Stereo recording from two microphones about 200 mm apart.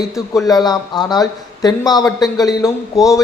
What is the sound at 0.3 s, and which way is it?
A man's voice, 20° left (ahead or behind).